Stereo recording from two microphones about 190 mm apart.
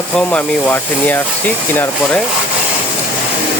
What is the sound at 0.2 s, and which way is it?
Speech, 10° left (ahead or behind).